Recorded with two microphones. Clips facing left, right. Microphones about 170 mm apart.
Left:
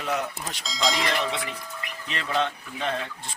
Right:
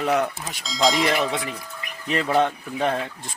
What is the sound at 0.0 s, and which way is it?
Speech, 55° right (ahead or behind).